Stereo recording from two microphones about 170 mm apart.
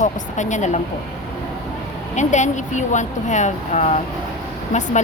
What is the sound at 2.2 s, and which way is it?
A woman's voice, 45° left (ahead or behind).